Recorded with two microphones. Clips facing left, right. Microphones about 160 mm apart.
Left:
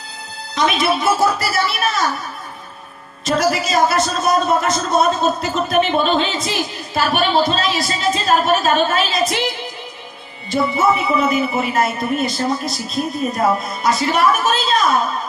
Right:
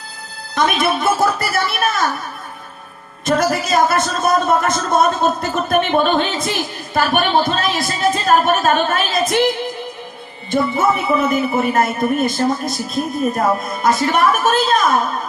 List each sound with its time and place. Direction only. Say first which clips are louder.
0.5 s a man's voice: even; 50° right (ahead or behind)
3.2 s a man's voice: right 1 dB; 55° right (ahead or behind)
10.5 s a man's voice: even; 50° right (ahead or behind)